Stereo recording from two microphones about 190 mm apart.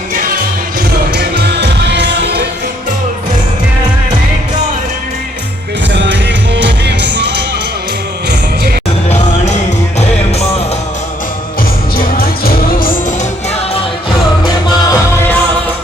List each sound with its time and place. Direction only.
0.1 s music: 45° right (ahead or behind)
1.1 s music: 60° right (ahead or behind)
5.9 s music: 65° right (ahead or behind)
11.9 s music: 50° left (ahead or behind)
14.8 s music: 15° left (ahead or behind)